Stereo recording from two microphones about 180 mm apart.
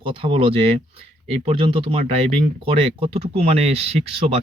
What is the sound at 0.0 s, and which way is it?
Speech, 30° right (ahead or behind).